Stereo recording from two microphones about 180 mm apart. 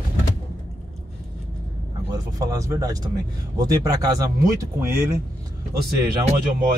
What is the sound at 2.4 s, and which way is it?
Speech, 20° right (ahead or behind).